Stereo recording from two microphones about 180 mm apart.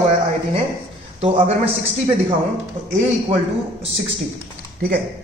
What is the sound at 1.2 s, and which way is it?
Speech, 35° right (ahead or behind).